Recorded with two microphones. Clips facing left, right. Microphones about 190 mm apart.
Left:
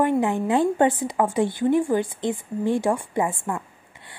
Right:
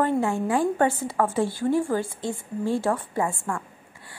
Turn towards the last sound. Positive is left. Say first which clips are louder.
# left 2 dB
turn(degrees=15)  # may be behind; listen again after turning